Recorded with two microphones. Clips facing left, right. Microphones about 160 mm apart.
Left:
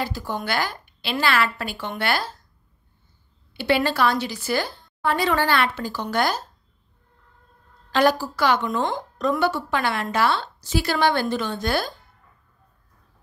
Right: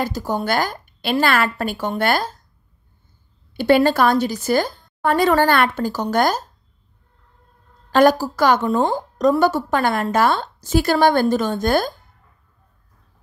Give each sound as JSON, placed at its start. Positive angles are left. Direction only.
{"t": 0.0, "sound": "a woman's voice", "side_deg": -40}
{"t": 3.5, "sound": "a woman's voice", "side_deg": -45}
{"t": 7.9, "sound": "a woman's voice", "side_deg": -45}